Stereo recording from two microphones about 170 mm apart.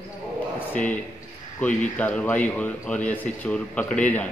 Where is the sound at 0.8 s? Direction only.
50° left (ahead or behind).